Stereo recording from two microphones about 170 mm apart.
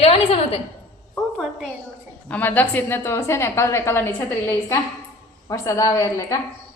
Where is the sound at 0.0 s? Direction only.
35° left (ahead or behind).